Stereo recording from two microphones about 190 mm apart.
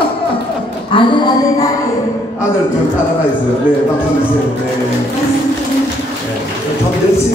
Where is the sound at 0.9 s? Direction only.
25° left (ahead or behind).